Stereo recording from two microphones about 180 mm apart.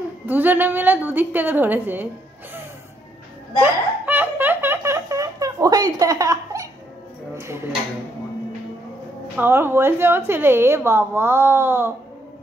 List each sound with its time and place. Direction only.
0.3 s a woman's voice: 10° right (ahead or behind)
3.6 s laughter: 10° right (ahead or behind)
7.3 s a sound: 15° right (ahead or behind)
9.4 s a woman's voice: 15° right (ahead or behind)